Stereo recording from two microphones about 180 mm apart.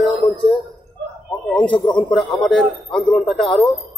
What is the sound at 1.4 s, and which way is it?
A man's voice, 5° left (ahead or behind).